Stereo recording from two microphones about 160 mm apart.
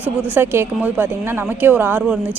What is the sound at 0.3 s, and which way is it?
Speech, 15° right (ahead or behind).